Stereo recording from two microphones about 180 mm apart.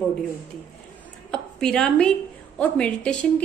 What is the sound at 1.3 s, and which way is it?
A woman's voice, 5° left (ahead or behind).